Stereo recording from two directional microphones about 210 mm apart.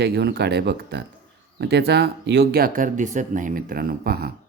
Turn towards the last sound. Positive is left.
turn(degrees=-45)  # may be behind; listen again after turning